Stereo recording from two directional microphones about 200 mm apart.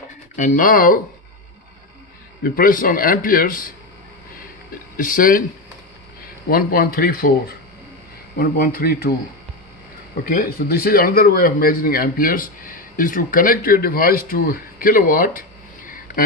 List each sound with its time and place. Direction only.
0.3 s speech: 40° left (ahead or behind)
2.4 s speech: 45° left (ahead or behind)
4.9 s speech: 45° left (ahead or behind)
6.5 s speech: 45° left (ahead or behind)
10.2 s speech: 45° left (ahead or behind)